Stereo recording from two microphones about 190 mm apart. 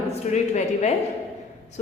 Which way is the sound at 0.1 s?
35° left (ahead or behind).